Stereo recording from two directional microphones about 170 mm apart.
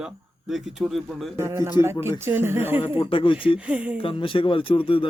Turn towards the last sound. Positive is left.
turn(degrees=30)  # may be behind; listen again after turning